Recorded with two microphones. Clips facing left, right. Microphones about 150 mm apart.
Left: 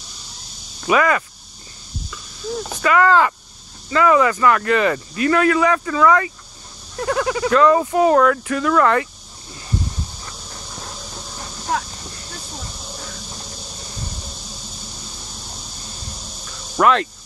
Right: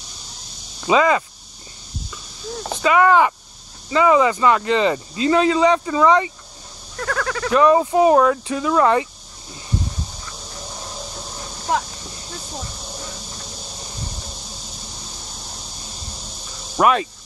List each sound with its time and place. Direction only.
0.8 s speech: 20° right (ahead or behind)
2.7 s speech: 20° right (ahead or behind)
7.0 s speech: 20° left (ahead or behind)
7.5 s speech: 20° right (ahead or behind)
16.4 s snake: 15° right (ahead or behind)